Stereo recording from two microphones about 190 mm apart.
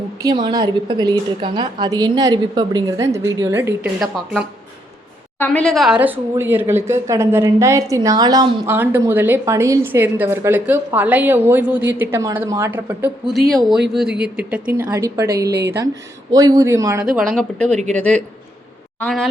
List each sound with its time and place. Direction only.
0.2 s a woman's voice: 20° right (ahead or behind)
4.0 s speech: centre (ahead or behind)
15.4 s speech: 60° right (ahead or behind)
16.3 s speech: 20° right (ahead or behind)
17.0 s a man's voice: centre (ahead or behind)